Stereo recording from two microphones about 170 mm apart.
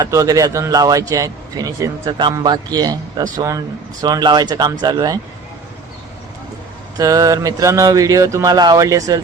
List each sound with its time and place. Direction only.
0.0 s a man's voice: 20° right (ahead or behind)
6.9 s a man's voice: 20° right (ahead or behind)